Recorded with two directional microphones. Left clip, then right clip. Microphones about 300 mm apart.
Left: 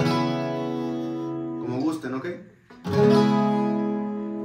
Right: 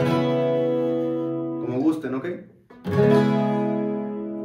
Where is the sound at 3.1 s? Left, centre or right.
Centre.